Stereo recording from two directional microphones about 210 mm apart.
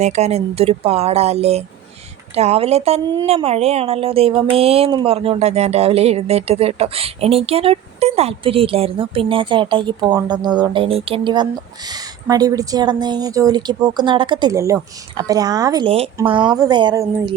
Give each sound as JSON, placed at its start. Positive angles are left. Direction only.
{"t": 0.0, "sound": "speech", "side_deg": -30}